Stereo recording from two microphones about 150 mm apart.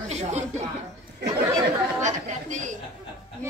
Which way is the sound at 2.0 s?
55° right (ahead or behind).